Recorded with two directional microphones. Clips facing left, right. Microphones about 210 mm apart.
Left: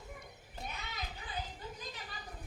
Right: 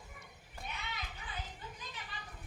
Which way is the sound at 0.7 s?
40° left (ahead or behind).